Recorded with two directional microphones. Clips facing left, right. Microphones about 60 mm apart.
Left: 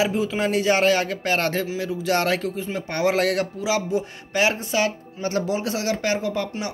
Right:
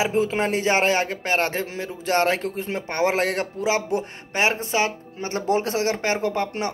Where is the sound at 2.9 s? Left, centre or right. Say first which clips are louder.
Left 1 dB; right.